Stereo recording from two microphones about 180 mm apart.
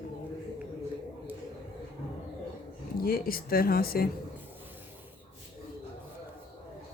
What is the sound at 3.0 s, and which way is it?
A woman's voice, 55° left (ahead or behind).